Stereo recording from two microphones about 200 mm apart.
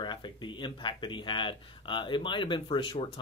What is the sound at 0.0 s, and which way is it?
Speech, 25° left (ahead or behind).